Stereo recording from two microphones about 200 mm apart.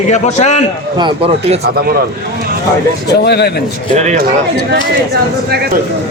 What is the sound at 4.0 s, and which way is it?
Speech, 35° right (ahead or behind).